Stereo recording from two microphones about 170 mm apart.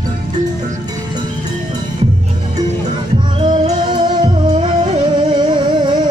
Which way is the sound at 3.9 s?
25° right (ahead or behind).